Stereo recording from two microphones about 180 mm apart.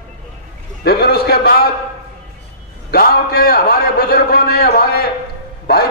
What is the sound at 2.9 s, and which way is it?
A man's voice, 60° left (ahead or behind).